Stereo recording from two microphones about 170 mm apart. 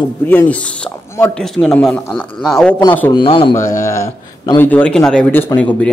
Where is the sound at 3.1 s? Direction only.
30° left (ahead or behind).